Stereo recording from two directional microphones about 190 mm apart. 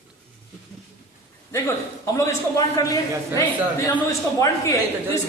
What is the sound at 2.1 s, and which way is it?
A man's voice, 15° left (ahead or behind).